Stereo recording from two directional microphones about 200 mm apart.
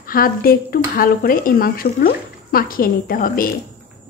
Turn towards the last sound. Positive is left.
turn(degrees=45)  # may be behind; listen again after turning